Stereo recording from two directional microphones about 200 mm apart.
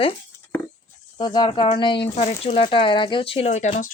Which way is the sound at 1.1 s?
20° left (ahead or behind).